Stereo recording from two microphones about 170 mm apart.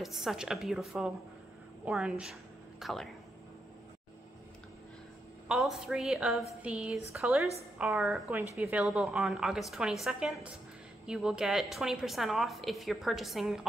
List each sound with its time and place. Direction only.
0.0 s a woman's voice: centre (ahead or behind)
5.5 s a woman's voice: centre (ahead or behind)